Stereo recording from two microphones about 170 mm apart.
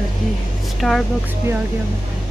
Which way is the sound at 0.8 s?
Centre (ahead or behind).